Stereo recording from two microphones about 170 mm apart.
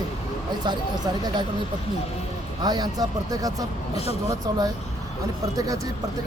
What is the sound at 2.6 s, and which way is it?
Speech, 25° right (ahead or behind).